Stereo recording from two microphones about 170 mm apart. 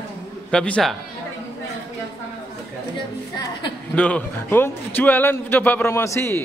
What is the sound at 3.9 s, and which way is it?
A man's voice, 10° left (ahead or behind).